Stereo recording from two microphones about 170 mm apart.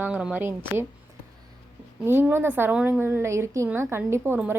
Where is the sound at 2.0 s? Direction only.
15° right (ahead or behind).